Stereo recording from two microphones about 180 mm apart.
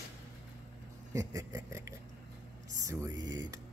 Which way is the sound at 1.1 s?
15° right (ahead or behind).